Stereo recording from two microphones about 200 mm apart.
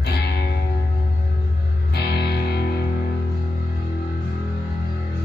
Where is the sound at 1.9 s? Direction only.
55° left (ahead or behind).